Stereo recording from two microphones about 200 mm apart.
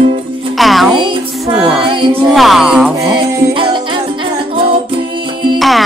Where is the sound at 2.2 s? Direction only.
Centre (ahead or behind).